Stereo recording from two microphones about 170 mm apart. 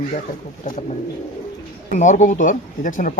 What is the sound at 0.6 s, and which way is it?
Speech, 50° left (ahead or behind).